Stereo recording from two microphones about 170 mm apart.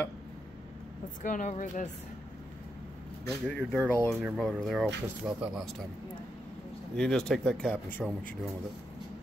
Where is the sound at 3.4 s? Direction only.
5° left (ahead or behind).